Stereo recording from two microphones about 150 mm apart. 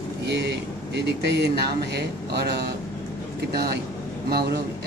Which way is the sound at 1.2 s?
90° right.